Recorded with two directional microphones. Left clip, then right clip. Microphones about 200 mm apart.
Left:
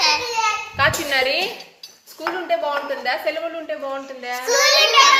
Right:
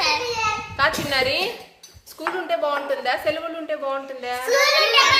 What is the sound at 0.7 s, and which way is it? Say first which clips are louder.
Music: left 2 dB; centre (ahead or behind).